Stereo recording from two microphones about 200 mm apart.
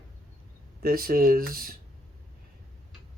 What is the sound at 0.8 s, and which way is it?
Speech, 50° right (ahead or behind).